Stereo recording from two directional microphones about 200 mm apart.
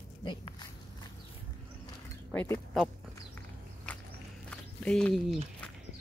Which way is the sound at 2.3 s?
10° left (ahead or behind).